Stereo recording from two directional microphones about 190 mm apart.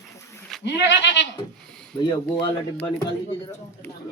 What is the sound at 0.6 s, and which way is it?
Speech, 70° left (ahead or behind).